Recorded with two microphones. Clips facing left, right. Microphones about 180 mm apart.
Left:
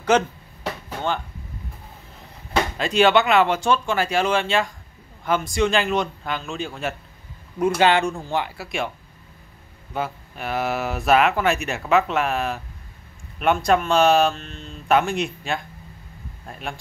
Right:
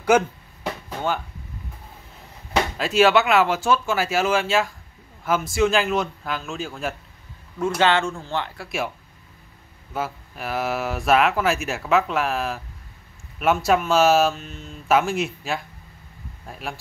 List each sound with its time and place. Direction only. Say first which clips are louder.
0.1 s speech: even; 10° right (ahead or behind)
2.8 s speech: even; centre (ahead or behind)
7.5 s speech: left 2 dB; 15° left (ahead or behind)
9.9 s speech: left 1 dB; centre (ahead or behind)